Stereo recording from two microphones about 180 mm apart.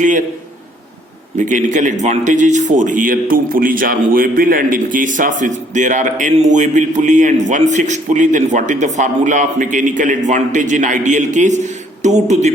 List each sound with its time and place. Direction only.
1.4 s a man's voice: 45° right (ahead or behind)